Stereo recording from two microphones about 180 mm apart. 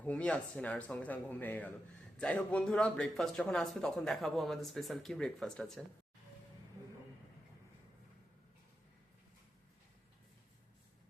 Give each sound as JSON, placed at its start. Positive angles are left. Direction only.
{"t": 0.0, "sound": "speech", "side_deg": 5}